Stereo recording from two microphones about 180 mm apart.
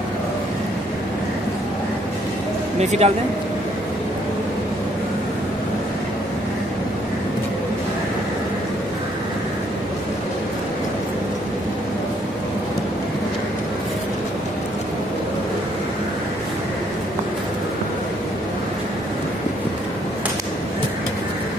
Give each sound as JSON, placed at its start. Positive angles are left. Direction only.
{"t": 2.8, "sound": "speech", "side_deg": -40}